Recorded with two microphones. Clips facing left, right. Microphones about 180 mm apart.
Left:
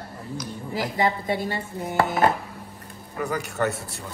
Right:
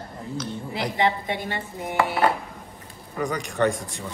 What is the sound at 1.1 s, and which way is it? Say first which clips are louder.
Speech: left 1 dB; 40° left (ahead or behind).